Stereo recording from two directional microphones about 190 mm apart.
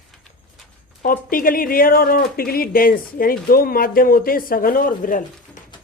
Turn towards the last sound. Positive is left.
turn(degrees=45)  # may be behind; listen again after turning